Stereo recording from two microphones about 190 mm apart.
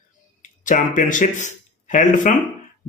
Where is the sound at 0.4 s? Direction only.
40° left (ahead or behind).